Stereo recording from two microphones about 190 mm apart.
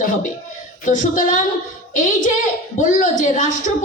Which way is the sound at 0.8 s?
45° left (ahead or behind).